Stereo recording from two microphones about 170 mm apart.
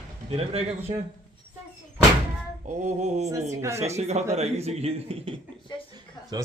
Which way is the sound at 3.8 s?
40° right (ahead or behind).